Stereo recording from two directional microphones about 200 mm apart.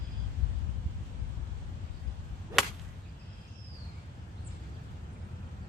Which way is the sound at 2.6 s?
Centre (ahead or behind).